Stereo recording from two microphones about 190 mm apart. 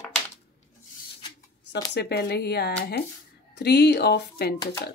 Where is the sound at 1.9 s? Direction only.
60° left (ahead or behind).